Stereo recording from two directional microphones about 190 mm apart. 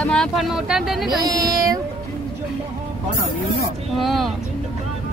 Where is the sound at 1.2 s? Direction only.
20° right (ahead or behind).